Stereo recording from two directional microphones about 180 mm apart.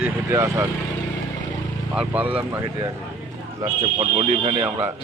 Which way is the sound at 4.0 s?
30° right (ahead or behind).